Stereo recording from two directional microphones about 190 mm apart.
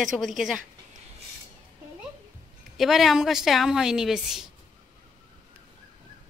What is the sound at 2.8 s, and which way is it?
A woman's voice, centre (ahead or behind).